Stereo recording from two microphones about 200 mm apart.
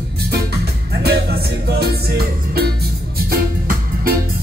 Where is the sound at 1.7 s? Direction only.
55° right (ahead or behind).